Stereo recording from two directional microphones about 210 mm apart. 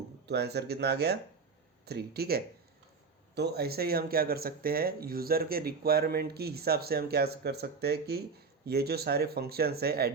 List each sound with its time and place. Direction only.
0.3 s speech: 50° right (ahead or behind)